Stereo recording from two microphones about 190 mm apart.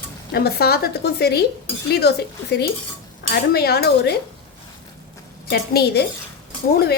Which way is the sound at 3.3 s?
55° left (ahead or behind).